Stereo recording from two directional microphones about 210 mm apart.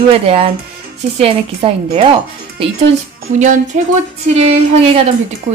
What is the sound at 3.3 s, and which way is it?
A woman's voice, 35° right (ahead or behind).